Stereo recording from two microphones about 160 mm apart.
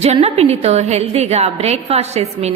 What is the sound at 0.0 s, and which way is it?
A woman's voice, 40° right (ahead or behind).